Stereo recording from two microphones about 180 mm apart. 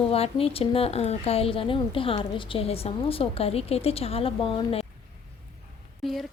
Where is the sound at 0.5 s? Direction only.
35° left (ahead or behind).